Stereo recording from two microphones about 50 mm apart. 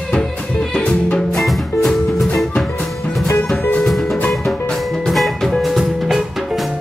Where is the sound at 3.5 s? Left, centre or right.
Left.